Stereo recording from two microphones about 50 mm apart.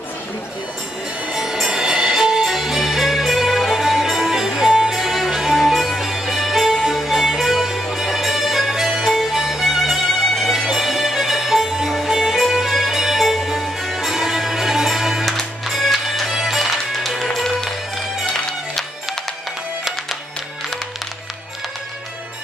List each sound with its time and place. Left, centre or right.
1.3 s music: centre